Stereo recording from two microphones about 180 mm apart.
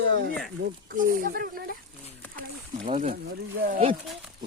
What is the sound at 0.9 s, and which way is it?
Speech, 50° right (ahead or behind).